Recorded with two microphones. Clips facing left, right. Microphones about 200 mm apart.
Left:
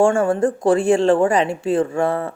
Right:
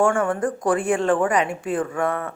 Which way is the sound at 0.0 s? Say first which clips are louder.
Left 4 dB; 25° left (ahead or behind).